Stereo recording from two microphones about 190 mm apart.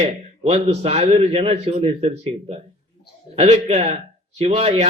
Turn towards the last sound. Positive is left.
turn(degrees=-35)  # may be behind; listen again after turning